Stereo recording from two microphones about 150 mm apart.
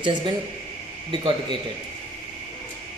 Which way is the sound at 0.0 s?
30° right (ahead or behind).